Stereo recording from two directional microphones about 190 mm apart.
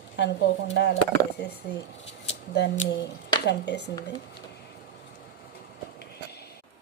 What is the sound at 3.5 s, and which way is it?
Speech, 65° left (ahead or behind).